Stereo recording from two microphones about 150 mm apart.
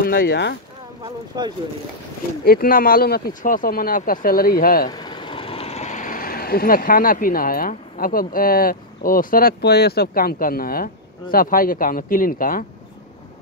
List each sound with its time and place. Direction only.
0.0 s speech: 85° left
2.4 s speech: 75° left (ahead or behind)
4.9 s speech: 30° left (ahead or behind); by 12.6 s 70° left (ahead or behind)